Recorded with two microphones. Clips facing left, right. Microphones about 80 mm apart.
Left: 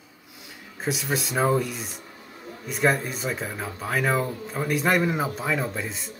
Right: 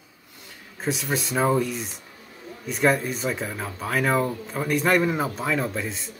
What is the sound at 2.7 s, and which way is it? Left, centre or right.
Speech, centre.